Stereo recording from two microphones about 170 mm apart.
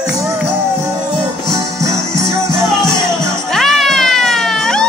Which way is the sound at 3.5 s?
Centre (ahead or behind).